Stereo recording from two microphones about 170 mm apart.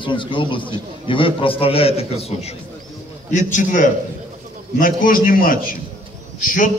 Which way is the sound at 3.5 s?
50° left (ahead or behind).